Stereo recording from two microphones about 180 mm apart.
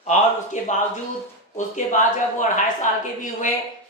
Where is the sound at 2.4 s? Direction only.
45° left (ahead or behind).